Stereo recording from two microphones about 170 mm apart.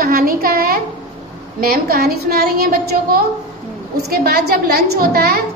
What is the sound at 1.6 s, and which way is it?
A woman's voice, 65° right (ahead or behind).